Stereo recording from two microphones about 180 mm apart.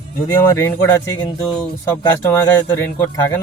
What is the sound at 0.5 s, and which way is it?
Speech, 10° left (ahead or behind).